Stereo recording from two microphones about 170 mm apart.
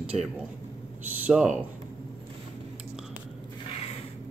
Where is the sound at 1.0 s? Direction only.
5° right (ahead or behind).